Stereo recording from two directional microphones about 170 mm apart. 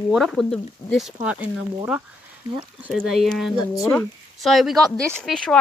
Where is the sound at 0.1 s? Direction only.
Centre (ahead or behind).